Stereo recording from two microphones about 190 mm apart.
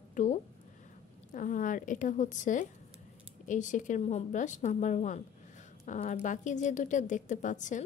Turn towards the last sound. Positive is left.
turn(degrees=40)  # may be behind; listen again after turning